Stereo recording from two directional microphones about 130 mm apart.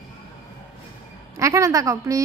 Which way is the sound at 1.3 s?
25° right (ahead or behind).